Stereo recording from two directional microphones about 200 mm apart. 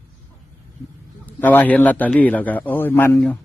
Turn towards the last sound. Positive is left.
turn(degrees=10)  # may be behind; listen again after turning